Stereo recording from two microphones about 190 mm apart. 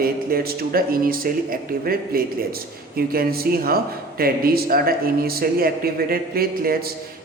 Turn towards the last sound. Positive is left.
turn(degrees=-50)  # may be behind; listen again after turning